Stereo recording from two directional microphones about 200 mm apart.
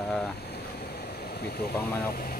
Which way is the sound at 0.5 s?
55° left (ahead or behind).